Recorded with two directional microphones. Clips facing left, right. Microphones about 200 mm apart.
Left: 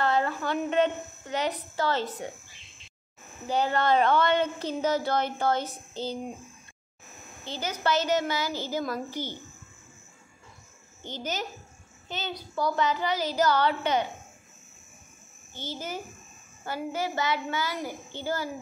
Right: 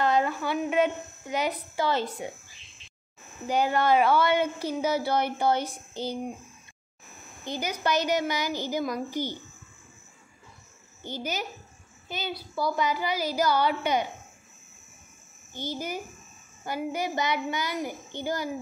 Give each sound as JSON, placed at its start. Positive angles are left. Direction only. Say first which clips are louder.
{"t": 0.0, "sound": "speech", "louder": "right 1 dB", "side_deg": -15}
{"t": 3.4, "sound": "speech", "louder": "right 1 dB", "side_deg": -15}
{"t": 7.4, "sound": "speech", "louder": "even", "side_deg": -15}
{"t": 11.0, "sound": "speech", "louder": "right 1 dB", "side_deg": -10}
{"t": 15.5, "sound": "speech", "louder": "right 3 dB", "side_deg": -15}